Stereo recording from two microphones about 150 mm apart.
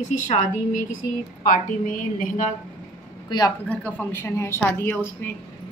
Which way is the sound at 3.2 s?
25° left (ahead or behind).